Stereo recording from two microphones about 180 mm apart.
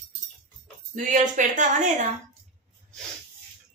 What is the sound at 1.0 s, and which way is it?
A woman's voice, 45° right (ahead or behind).